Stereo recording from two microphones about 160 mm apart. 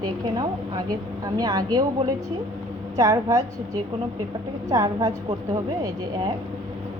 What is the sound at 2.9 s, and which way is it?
A woman's voice, 20° right (ahead or behind).